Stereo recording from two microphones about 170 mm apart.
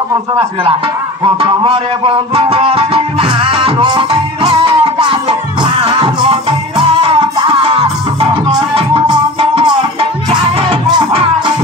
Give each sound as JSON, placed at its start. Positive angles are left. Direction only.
{"t": 1.4, "sound": "music", "side_deg": -30}